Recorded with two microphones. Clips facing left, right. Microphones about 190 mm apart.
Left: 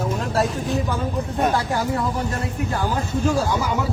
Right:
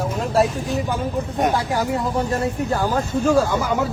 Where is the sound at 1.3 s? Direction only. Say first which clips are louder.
Right 1 dB; 15° right (ahead or behind).